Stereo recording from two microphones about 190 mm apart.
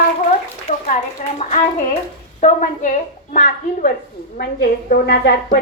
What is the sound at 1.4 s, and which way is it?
A woman's voice, 35° left (ahead or behind).